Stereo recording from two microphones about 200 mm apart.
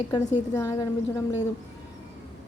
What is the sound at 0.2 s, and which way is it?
Speech, 35° left (ahead or behind).